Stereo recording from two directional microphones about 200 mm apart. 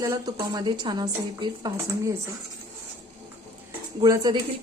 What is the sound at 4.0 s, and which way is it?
Speech, 20° right (ahead or behind).